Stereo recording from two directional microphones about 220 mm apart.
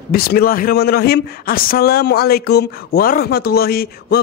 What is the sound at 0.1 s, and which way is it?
A man's voice, 45° left (ahead or behind).